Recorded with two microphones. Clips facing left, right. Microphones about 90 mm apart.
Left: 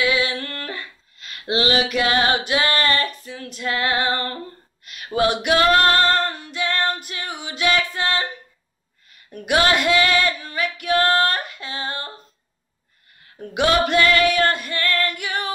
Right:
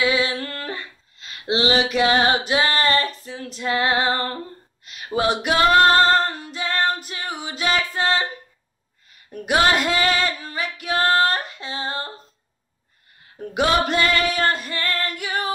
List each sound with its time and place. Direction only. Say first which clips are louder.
0.0 s female singing: even; 30° right (ahead or behind)
5.6 s female singing: right 3 dB; 25° right (ahead or behind)
6.2 s female singing: left 1 dB; 45° right (ahead or behind)
7.9 s a sound: right 2 dB; 35° right (ahead or behind)
9.3 s female singing: even; 40° right (ahead or behind)
13.5 s female singing: left 1 dB; 40° right (ahead or behind)
15.1 s singing: right 1 dB; 40° right (ahead or behind)